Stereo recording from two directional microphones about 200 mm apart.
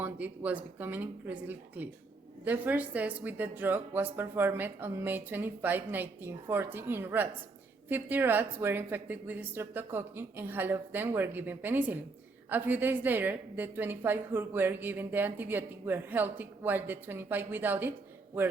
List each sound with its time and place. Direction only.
0.0 s a woman's voice: 10° right (ahead or behind)